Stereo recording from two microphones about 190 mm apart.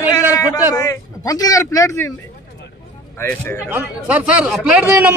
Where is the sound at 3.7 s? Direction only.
10° right (ahead or behind).